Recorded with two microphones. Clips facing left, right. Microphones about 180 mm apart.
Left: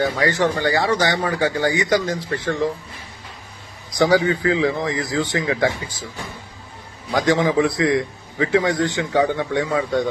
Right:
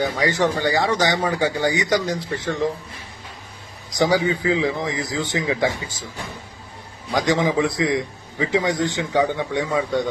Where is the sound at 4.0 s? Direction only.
15° right (ahead or behind).